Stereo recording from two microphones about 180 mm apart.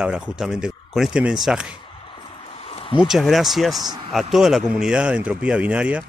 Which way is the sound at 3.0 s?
Centre (ahead or behind).